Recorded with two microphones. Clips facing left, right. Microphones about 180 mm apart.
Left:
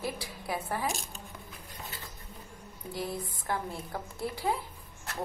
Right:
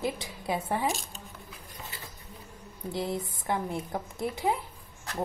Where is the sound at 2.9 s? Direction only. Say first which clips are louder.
Right 4 dB; 25° right (ahead or behind).